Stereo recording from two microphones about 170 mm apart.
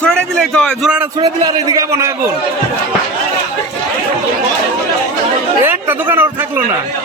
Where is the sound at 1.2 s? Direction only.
25° right (ahead or behind).